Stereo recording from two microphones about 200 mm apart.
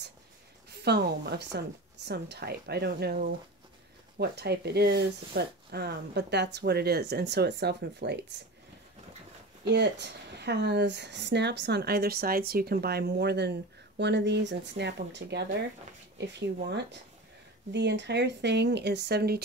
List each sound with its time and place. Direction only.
0.7 s a woman's voice: 55° right (ahead or behind)
9.7 s speech: 55° right (ahead or behind)
17.7 s speech: 60° right (ahead or behind)